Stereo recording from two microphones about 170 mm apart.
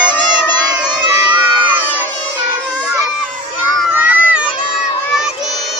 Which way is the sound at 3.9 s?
10° right (ahead or behind).